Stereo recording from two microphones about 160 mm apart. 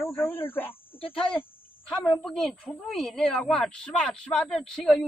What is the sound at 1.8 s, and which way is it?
A woman's voice, 5° left (ahead or behind).